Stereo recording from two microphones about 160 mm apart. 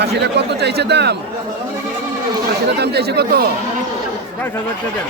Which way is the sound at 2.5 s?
90° right.